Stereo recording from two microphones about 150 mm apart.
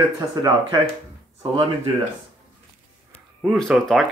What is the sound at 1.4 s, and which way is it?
Speech, 40° right (ahead or behind).